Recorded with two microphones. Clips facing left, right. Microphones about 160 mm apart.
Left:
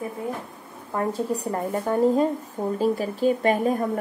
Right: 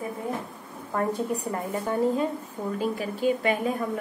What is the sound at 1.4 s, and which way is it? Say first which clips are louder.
A woman's voice: left 3 dB; 40° left (ahead or behind).